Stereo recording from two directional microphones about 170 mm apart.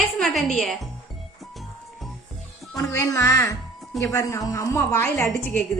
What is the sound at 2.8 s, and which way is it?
A woman's voice, 20° left (ahead or behind).